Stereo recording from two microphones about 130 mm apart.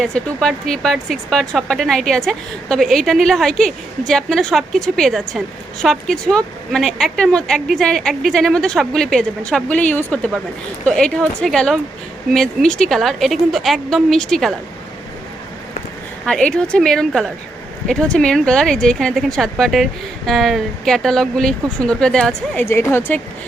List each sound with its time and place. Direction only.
0.0 s speech: 5° left (ahead or behind)
16.2 s speech: 5° left (ahead or behind)